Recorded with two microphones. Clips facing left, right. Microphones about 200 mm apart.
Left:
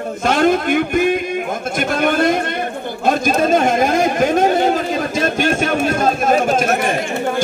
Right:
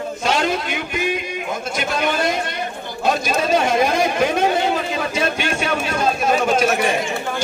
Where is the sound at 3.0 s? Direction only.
50° left (ahead or behind).